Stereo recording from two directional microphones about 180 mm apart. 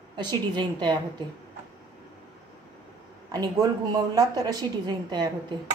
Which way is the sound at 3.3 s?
20° right (ahead or behind).